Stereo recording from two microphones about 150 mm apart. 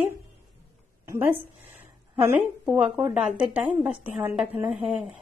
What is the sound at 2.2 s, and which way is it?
A woman's voice, 10° right (ahead or behind).